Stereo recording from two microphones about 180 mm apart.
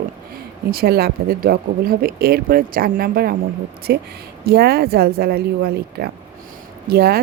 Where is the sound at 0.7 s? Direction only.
60° right (ahead or behind).